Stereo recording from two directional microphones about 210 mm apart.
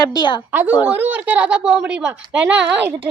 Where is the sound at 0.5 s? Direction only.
10° right (ahead or behind).